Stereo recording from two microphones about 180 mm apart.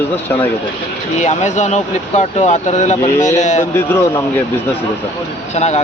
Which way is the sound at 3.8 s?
10° left (ahead or behind).